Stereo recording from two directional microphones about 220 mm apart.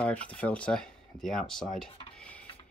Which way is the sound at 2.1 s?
5° left (ahead or behind).